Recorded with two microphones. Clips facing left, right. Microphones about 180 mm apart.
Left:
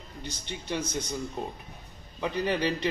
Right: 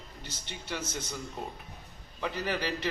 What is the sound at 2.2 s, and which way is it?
Speech, 20° left (ahead or behind).